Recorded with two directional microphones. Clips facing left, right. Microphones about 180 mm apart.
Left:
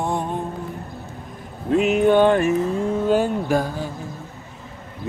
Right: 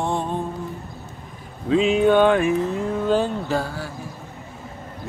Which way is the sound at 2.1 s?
10° left (ahead or behind).